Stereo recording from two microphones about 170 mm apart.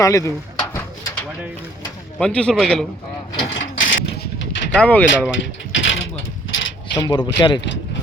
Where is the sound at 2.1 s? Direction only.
5° left (ahead or behind).